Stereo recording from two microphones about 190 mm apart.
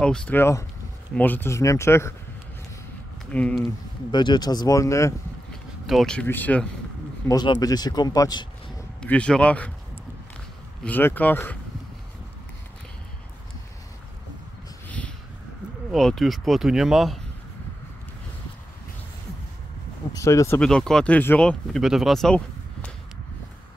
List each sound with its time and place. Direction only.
0.0 s speech: 5° left (ahead or behind)
3.3 s speech: 5° left (ahead or behind)
4.1 s speech: 25° left (ahead or behind)
5.5 s speech: centre (ahead or behind)
7.2 s speech: 20° left (ahead or behind)
9.0 s speech: 5° left (ahead or behind)
10.8 s speech: 10° left (ahead or behind)
14.9 s a sound: 5° left (ahead or behind)
15.9 s speech: centre (ahead or behind)
20.1 s speech: 15° left (ahead or behind)
20.6 s speech: 5° left (ahead or behind)